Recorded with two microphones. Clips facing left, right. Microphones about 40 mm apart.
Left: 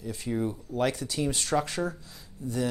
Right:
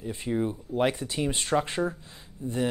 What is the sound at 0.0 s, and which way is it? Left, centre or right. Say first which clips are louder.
Speech: right 2 dB; right.